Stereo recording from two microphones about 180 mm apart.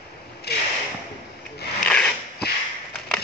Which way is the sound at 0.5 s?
65° left (ahead or behind).